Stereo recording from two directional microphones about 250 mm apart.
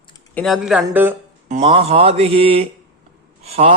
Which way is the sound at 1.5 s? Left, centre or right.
Right.